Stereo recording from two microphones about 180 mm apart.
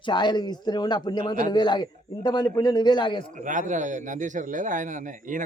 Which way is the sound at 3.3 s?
45° right (ahead or behind).